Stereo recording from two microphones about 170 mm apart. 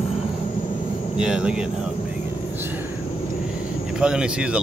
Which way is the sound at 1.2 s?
5° right (ahead or behind).